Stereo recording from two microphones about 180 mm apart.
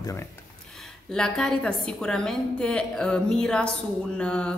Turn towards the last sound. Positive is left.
turn(degrees=5)  # may be behind; listen again after turning